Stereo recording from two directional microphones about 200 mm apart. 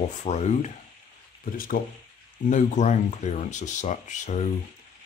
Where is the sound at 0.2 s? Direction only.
35° left (ahead or behind).